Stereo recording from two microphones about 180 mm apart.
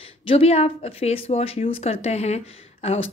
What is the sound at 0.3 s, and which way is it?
A woman's voice, 35° left (ahead or behind).